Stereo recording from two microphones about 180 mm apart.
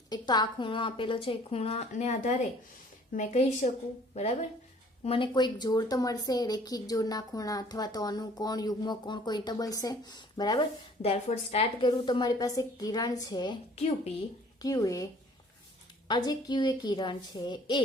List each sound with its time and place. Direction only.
0.1 s a woman's voice: 20° left (ahead or behind)
11.0 s a woman's voice: 35° left (ahead or behind)